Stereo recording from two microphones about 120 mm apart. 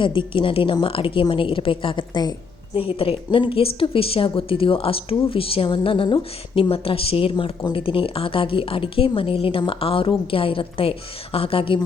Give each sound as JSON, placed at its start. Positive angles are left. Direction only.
{"t": 0.0, "sound": "a woman's voice", "side_deg": 45}